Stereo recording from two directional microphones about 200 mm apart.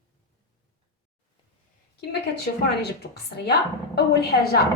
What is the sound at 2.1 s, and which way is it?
A woman's voice, 55° left (ahead or behind).